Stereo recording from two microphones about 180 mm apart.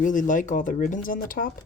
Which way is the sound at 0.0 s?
45° left (ahead or behind).